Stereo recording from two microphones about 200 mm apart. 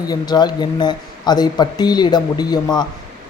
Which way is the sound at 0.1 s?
20° left (ahead or behind).